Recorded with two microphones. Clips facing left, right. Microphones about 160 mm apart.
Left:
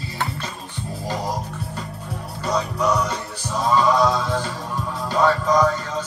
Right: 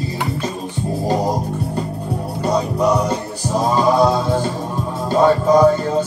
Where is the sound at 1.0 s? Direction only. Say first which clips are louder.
Right 7 dB; 35° right (ahead or behind).